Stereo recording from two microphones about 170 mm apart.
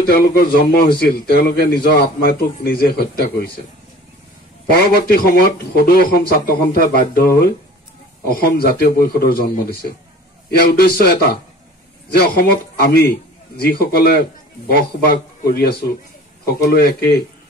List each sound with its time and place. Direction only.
0.0 s a man's voice: 65° left (ahead or behind)
4.7 s a man's voice: 65° left (ahead or behind)
10.7 s a man's voice: 65° left (ahead or behind)